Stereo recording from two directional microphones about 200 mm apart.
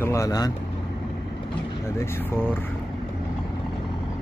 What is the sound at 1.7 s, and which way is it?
Speech, 15° left (ahead or behind).